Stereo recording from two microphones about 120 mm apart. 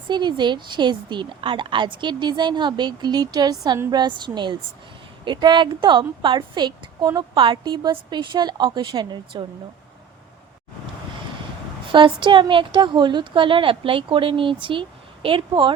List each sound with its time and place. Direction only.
0.1 s a woman's voice: 40° right (ahead or behind)
11.9 s speech: 45° right (ahead or behind)